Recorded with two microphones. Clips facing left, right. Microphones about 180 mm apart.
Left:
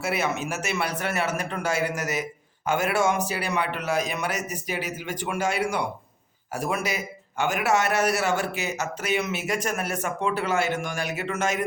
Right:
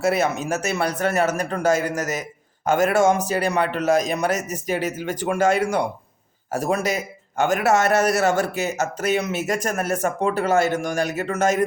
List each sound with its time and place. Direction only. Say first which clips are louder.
0.0 s speech: right 6 dB; 40° right (ahead or behind)